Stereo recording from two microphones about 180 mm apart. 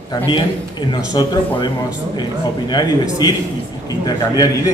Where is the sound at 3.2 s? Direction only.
20° left (ahead or behind).